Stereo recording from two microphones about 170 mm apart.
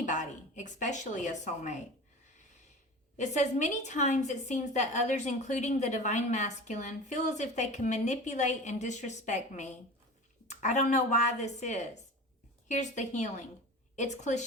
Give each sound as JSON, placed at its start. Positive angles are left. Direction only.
{"t": 0.0, "sound": "speech", "side_deg": 45}
{"t": 3.2, "sound": "a woman's voice", "side_deg": 45}